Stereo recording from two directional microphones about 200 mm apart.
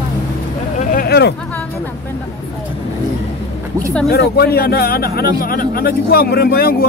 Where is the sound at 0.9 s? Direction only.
50° left (ahead or behind).